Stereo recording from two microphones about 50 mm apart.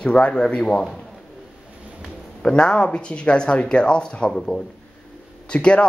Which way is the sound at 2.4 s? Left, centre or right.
Centre.